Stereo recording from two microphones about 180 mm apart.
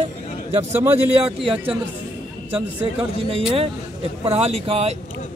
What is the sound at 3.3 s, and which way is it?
Speech, 30° right (ahead or behind).